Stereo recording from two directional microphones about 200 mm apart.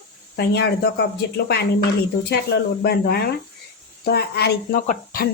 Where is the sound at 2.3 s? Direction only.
55° left (ahead or behind).